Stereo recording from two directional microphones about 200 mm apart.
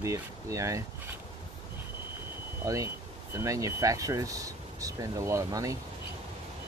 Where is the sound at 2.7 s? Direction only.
15° right (ahead or behind).